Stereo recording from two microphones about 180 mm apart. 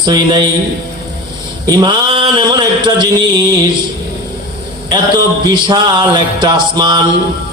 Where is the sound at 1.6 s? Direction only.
20° right (ahead or behind).